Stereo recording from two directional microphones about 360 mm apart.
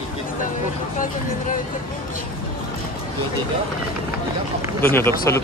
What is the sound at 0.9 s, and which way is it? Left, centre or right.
Speech, left.